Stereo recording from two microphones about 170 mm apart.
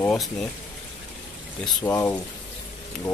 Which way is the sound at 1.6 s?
5° left (ahead or behind).